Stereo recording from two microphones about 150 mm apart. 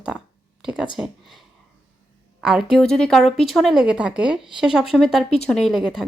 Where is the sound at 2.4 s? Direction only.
5° right (ahead or behind).